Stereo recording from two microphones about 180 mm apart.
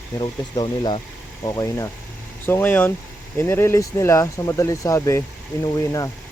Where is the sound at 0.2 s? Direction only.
25° left (ahead or behind).